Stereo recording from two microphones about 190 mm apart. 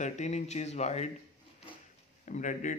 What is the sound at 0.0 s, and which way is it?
Speech, 40° left (ahead or behind).